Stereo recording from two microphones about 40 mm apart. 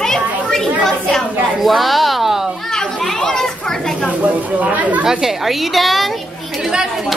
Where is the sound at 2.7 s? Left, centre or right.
Centre.